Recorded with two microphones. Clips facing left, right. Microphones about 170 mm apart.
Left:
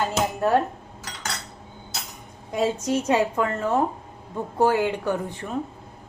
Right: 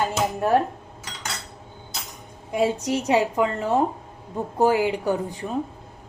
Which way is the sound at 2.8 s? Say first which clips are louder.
Even; 15° right (ahead or behind).